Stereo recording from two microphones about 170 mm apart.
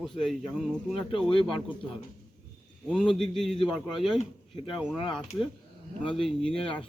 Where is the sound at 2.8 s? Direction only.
Centre (ahead or behind).